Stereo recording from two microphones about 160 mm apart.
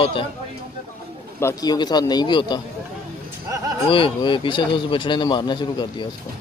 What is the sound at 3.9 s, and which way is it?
Speech, 30° left (ahead or behind).